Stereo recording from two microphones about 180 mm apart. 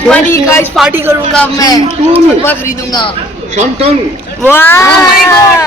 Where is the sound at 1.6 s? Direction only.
20° left (ahead or behind).